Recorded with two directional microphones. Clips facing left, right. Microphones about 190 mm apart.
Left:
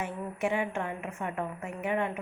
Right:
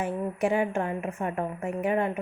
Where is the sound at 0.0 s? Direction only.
35° right (ahead or behind).